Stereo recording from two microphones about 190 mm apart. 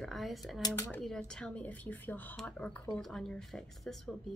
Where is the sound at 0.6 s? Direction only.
20° left (ahead or behind).